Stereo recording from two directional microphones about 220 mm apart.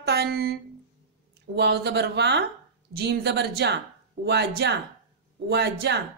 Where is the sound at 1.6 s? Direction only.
50° right (ahead or behind).